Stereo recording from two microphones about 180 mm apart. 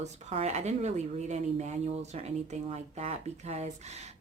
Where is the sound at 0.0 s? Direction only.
35° right (ahead or behind).